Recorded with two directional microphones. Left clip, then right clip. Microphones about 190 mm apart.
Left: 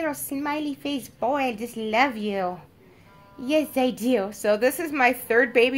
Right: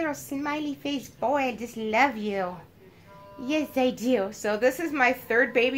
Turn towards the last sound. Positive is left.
turn(degrees=45)  # may be behind; listen again after turning